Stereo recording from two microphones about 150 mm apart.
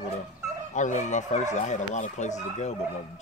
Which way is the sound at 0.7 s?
55° left (ahead or behind).